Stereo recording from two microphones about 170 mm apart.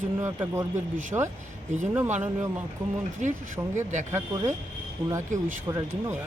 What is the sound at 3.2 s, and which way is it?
Speech, 45° right (ahead or behind).